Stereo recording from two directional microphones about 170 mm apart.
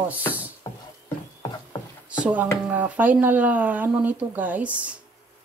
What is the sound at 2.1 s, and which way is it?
Speech, 10° right (ahead or behind).